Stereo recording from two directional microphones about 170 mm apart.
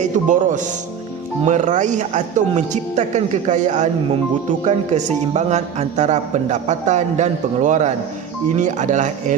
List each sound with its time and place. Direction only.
0.0 s a man's voice: 45° right (ahead or behind)